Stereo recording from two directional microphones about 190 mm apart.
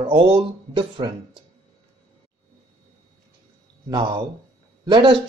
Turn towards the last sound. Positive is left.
turn(degrees=-25)  # may be behind; listen again after turning